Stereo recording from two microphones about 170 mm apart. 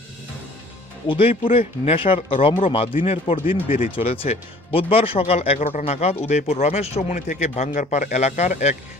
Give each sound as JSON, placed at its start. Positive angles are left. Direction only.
{"t": 1.0, "sound": "speech", "side_deg": 35}